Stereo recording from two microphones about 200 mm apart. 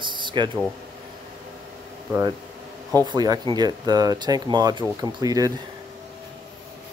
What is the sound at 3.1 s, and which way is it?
Speech, 20° right (ahead or behind).